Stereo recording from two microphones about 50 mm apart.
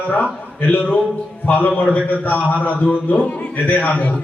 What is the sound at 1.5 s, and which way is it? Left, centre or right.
A man's voice, left.